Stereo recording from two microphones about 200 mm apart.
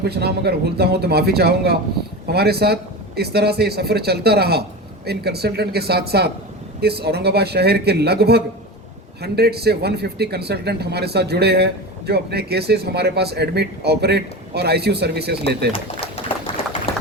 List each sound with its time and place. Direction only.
0.1 s speech: 55° right (ahead or behind)
15.7 s pigeon: 30° left (ahead or behind)